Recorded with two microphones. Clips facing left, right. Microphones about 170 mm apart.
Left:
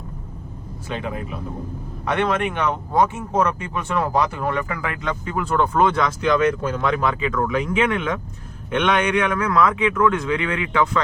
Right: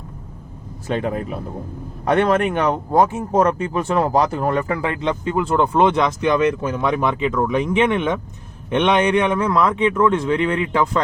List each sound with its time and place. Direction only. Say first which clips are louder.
0.9 s speech: right 6 dB; 40° right (ahead or behind)